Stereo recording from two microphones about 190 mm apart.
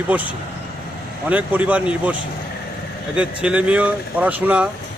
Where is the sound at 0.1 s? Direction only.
10° right (ahead or behind).